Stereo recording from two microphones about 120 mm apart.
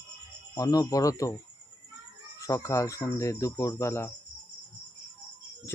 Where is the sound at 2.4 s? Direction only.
25° left (ahead or behind).